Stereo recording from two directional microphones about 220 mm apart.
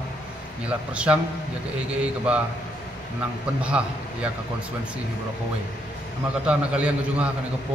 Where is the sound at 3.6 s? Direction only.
5° right (ahead or behind).